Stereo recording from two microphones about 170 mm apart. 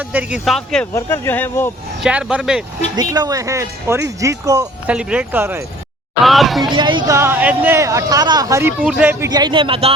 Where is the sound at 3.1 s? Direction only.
20° right (ahead or behind).